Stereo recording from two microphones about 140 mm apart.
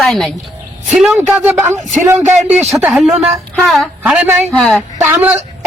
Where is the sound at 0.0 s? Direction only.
Centre (ahead or behind); by 2.6 s 15° right (ahead or behind).